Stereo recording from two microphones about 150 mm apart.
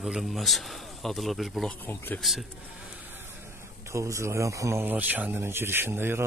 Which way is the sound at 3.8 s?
20° right (ahead or behind).